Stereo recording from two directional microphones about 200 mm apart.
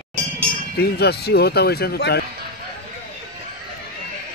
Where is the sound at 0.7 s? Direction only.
55° left (ahead or behind).